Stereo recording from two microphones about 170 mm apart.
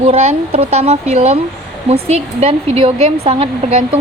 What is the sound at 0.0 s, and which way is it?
Speech, 35° right (ahead or behind).